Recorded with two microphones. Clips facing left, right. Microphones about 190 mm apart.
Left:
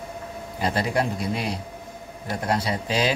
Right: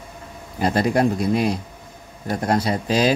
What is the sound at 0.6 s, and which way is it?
Speech, 45° right (ahead or behind).